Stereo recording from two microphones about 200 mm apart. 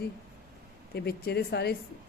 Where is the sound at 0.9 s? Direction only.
50° left (ahead or behind).